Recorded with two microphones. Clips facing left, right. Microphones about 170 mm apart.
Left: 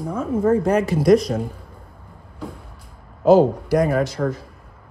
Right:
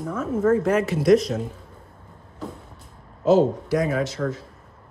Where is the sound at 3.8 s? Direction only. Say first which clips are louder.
Left 5 dB; 50° left (ahead or behind).